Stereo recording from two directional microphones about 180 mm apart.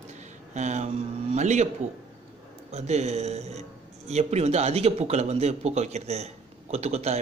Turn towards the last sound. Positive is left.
turn(degrees=-35)  # may be behind; listen again after turning